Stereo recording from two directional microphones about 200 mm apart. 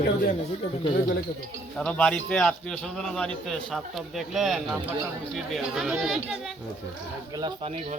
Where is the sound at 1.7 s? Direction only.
Centre (ahead or behind).